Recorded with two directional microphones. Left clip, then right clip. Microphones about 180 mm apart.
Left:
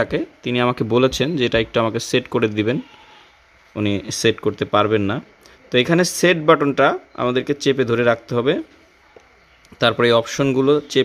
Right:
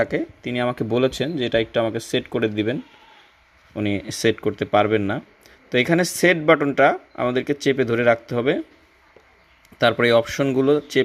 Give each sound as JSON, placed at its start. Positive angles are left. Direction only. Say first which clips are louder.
{"t": 0.0, "sound": "speech", "louder": "left 1 dB", "side_deg": 0}
{"t": 0.5, "sound": "speech", "louder": "left 4 dB", "side_deg": 20}
{"t": 3.8, "sound": "speech", "louder": "left 3 dB", "side_deg": 10}
{"t": 9.6, "sound": "speech", "louder": "left 2 dB", "side_deg": 0}